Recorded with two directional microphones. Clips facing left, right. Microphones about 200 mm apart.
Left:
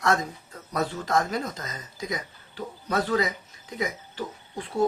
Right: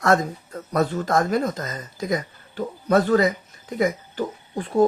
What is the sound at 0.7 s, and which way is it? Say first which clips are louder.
Speech: right 5 dB; 50° right (ahead or behind).